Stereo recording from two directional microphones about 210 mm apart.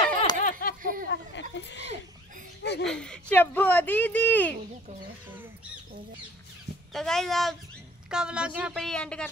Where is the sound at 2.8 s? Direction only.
5° left (ahead or behind).